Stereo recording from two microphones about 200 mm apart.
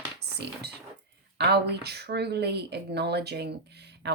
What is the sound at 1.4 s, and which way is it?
Speech, 55° right (ahead or behind).